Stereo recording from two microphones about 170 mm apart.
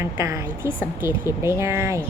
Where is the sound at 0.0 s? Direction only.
15° right (ahead or behind).